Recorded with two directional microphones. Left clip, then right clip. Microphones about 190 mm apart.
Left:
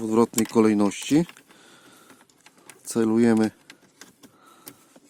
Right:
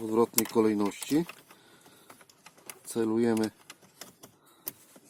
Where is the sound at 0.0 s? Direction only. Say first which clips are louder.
Left 5 dB; 45° left (ahead or behind).